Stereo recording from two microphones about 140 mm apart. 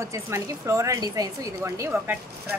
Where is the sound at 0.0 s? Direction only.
20° right (ahead or behind).